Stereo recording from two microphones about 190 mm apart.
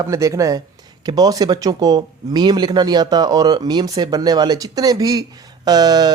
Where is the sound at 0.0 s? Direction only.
15° right (ahead or behind).